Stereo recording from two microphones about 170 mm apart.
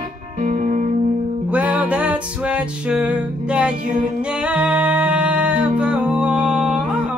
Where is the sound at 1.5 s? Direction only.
10° right (ahead or behind).